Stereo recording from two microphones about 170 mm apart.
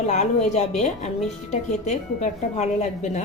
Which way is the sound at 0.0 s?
40° left (ahead or behind).